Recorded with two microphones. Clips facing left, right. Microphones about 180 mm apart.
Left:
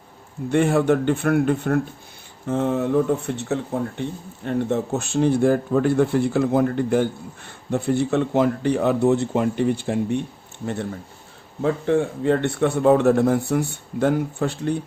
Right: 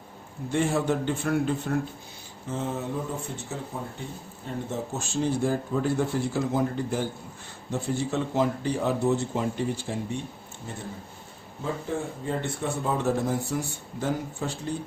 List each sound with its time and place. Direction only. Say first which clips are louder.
0.5 s speech: left 7 dB; 60° left (ahead or behind)
11.6 s speech: left 10 dB; 70° left (ahead or behind)